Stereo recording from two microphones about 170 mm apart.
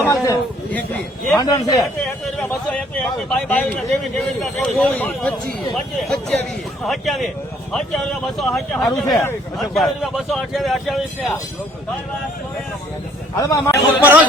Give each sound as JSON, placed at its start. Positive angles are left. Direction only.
{"t": 0.1, "sound": "a man's voice", "side_deg": 20}
{"t": 0.7, "sound": "speech", "side_deg": 5}
{"t": 1.4, "sound": "a man's voice", "side_deg": 20}
{"t": 1.8, "sound": "speech", "side_deg": 0}
{"t": 13.3, "sound": "a man's voice", "side_deg": 20}
{"t": 14.0, "sound": "speech", "side_deg": -10}